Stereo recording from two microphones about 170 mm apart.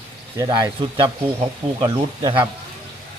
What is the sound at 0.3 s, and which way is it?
Speech, 25° right (ahead or behind).